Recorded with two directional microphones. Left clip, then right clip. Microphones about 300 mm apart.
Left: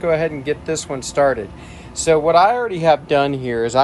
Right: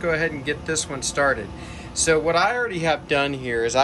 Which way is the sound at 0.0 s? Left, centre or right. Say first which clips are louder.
Left 5 dB; centre.